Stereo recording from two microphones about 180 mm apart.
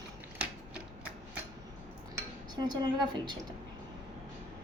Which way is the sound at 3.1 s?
25° right (ahead or behind).